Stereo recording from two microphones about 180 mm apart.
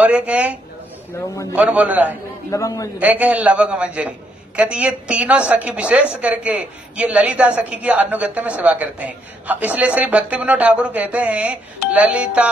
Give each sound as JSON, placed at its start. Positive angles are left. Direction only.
{"t": 0.0, "sound": "a woman's voice", "side_deg": -10}
{"t": 1.1, "sound": "a man's voice", "side_deg": 15}
{"t": 1.5, "sound": "a woman's voice", "side_deg": -10}
{"t": 2.5, "sound": "a man's voice", "side_deg": 15}
{"t": 3.0, "sound": "a woman's voice", "side_deg": -10}